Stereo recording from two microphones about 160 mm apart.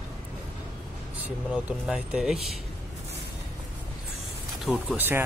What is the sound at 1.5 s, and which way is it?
Speech, 5° right (ahead or behind).